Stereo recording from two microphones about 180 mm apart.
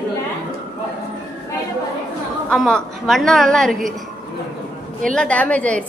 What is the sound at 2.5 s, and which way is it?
A woman's voice, 5° left (ahead or behind).